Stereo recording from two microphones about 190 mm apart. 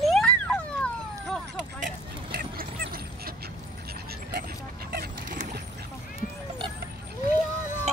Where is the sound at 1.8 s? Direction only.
50° right (ahead or behind).